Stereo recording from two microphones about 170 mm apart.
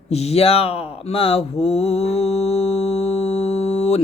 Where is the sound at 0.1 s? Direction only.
40° left (ahead or behind).